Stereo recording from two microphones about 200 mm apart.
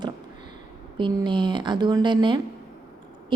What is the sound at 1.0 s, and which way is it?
A woman's voice, 25° right (ahead or behind).